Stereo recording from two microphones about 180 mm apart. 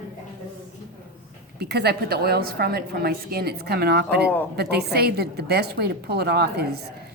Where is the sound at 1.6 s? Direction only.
65° right (ahead or behind).